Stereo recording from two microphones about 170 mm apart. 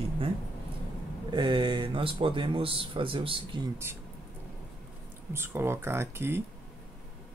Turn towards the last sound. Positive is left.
turn(degrees=-15)  # may be behind; listen again after turning